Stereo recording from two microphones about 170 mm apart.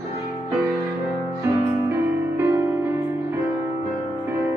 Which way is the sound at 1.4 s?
15° right (ahead or behind).